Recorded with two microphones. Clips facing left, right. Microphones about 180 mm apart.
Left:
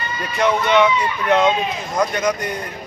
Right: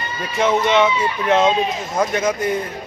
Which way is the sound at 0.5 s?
25° right (ahead or behind).